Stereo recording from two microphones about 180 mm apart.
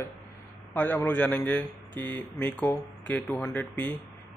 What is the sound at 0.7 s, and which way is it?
A man's voice, 10° left (ahead or behind).